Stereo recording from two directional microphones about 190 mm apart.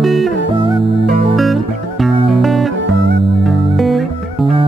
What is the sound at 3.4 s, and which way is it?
Music, centre (ahead or behind).